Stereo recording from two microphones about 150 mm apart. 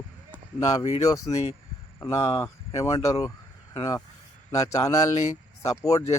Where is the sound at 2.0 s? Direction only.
20° left (ahead or behind).